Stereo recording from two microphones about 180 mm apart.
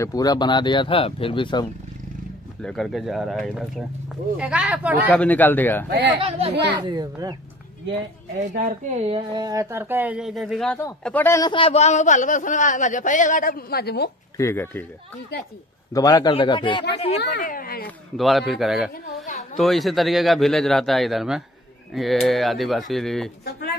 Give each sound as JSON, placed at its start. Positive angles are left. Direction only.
{"t": 0.0, "sound": "speech", "side_deg": 20}
{"t": 2.6, "sound": "a man's voice", "side_deg": 0}
{"t": 5.1, "sound": "a man's voice", "side_deg": 10}
{"t": 5.9, "sound": "speech", "side_deg": -65}
{"t": 6.1, "sound": "a child's voice", "side_deg": -30}
{"t": 8.4, "sound": "a woman's voice", "side_deg": -45}
{"t": 9.1, "sound": "a man's voice", "side_deg": -25}
{"t": 11.4, "sound": "speech", "side_deg": 30}
{"t": 14.3, "sound": "a man's voice", "side_deg": 15}
{"t": 15.9, "sound": "speech", "side_deg": 20}
{"t": 17.4, "sound": "speech", "side_deg": 50}
{"t": 17.8, "sound": "a man's voice", "side_deg": 0}